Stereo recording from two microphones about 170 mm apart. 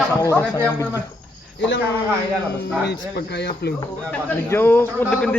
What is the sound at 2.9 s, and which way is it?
Speech, 90° left.